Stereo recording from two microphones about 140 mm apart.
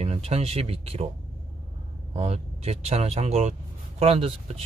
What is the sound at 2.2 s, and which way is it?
Speech, 50° right (ahead or behind).